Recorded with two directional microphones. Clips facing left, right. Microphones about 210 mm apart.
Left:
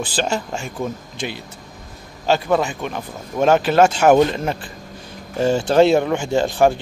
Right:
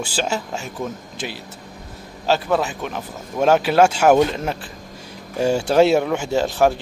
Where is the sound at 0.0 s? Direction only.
5° right (ahead or behind).